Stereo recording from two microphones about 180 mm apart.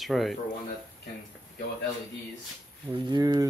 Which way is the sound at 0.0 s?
Centre (ahead or behind).